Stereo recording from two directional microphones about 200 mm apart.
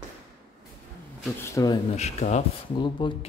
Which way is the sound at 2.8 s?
25° left (ahead or behind).